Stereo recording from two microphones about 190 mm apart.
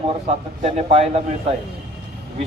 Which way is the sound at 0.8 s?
30° right (ahead or behind).